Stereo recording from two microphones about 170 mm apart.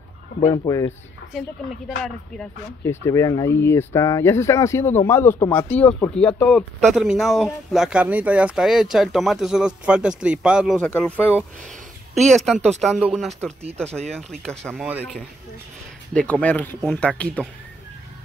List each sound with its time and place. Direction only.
0.5 s speech: 20° left (ahead or behind)
3.1 s speech: 20° left (ahead or behind); by 10.8 s 5° right (ahead or behind)
10.8 s speech: 10° left (ahead or behind)
14.7 s speech: 10° right (ahead or behind)
16.1 s speech: 10° left (ahead or behind)